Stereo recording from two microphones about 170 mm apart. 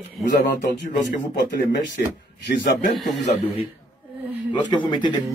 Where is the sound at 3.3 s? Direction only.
35° left (ahead or behind).